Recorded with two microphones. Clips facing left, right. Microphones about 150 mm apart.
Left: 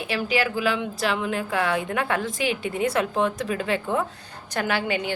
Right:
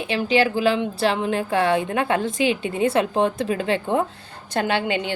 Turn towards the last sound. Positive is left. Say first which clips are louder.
# right 3 dB
turn(degrees=-25)  # may be behind; listen again after turning